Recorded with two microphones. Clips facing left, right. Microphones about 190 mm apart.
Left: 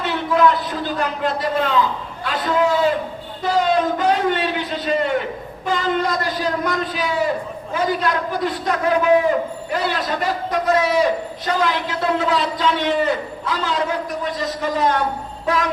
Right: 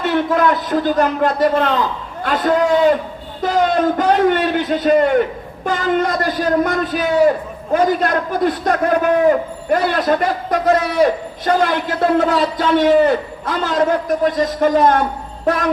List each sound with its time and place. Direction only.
0.0 s a man's voice: 50° right (ahead or behind)